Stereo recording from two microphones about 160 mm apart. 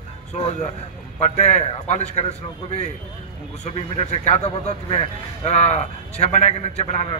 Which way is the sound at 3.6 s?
45° left (ahead or behind).